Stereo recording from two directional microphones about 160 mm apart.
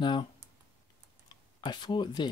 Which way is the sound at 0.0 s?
30° left (ahead or behind).